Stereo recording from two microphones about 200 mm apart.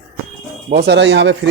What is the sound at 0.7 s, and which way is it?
Speech, 55° right (ahead or behind).